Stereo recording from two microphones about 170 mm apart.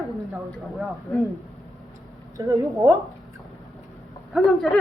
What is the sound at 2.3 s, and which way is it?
Speech, 20° right (ahead or behind).